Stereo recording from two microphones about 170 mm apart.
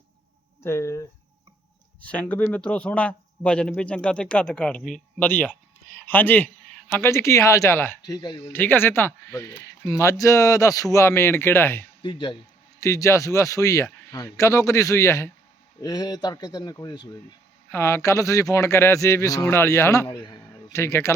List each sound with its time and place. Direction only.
0.6 s a man's voice: 15° left (ahead or behind)
8.4 s a man's voice: 10° left (ahead or behind)
12.0 s speech: 30° left (ahead or behind)
12.8 s a man's voice: 15° left (ahead or behind)